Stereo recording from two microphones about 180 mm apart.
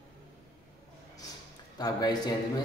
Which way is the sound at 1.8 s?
20° left (ahead or behind).